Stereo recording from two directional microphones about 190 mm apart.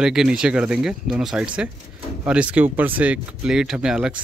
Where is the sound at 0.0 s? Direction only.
5° right (ahead or behind).